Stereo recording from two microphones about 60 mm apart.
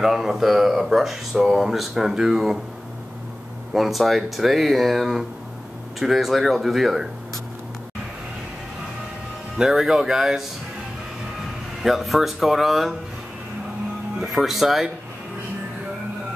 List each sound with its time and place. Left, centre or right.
0.0 s speech: centre
3.7 s speech: centre
9.6 s speech: centre
11.8 s speech: centre
14.2 s speech: centre